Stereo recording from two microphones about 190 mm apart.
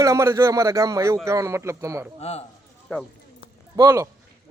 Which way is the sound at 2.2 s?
35° left (ahead or behind).